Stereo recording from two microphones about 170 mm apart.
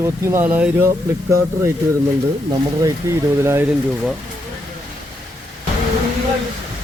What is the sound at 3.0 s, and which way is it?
Speech, 15° right (ahead or behind).